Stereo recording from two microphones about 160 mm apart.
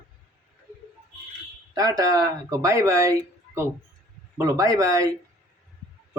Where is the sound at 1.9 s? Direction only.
25° right (ahead or behind).